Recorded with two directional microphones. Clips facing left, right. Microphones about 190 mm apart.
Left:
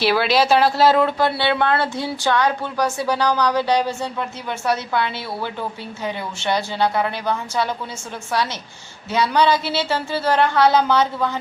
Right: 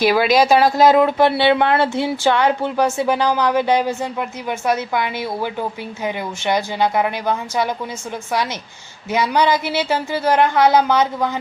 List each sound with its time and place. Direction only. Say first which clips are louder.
0.1 s speech: right 3 dB; 10° right (ahead or behind)
9.1 s speech: right 1 dB; 15° right (ahead or behind)